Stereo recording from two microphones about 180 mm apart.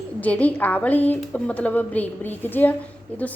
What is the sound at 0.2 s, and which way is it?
A woman's voice, 10° left (ahead or behind).